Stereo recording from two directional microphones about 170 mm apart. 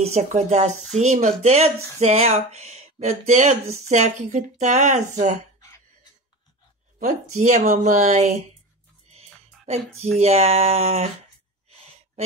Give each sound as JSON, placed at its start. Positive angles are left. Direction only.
{"t": 0.0, "sound": "speech", "side_deg": -40}
{"t": 7.0, "sound": "speech", "side_deg": -50}
{"t": 10.1, "sound": "speech", "side_deg": -40}